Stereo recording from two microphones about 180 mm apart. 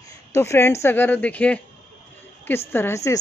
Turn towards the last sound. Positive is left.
turn(degrees=15)  # may be behind; listen again after turning